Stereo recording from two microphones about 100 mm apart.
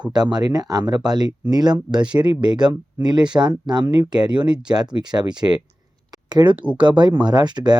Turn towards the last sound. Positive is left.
turn(degrees=-45)  # may be behind; listen again after turning